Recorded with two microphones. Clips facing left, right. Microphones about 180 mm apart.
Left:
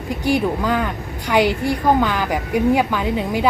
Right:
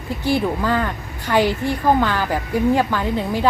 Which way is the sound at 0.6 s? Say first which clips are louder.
Even; 10° left (ahead or behind).